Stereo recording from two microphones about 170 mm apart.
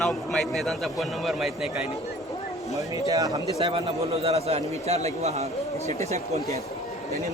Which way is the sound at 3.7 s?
35° right (ahead or behind).